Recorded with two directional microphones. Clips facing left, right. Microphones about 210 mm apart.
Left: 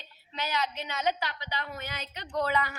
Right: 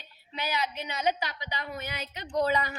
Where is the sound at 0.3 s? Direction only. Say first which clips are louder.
Even; 15° right (ahead or behind).